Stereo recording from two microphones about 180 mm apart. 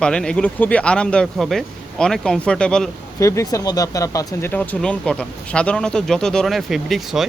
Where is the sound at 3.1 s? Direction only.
15° left (ahead or behind).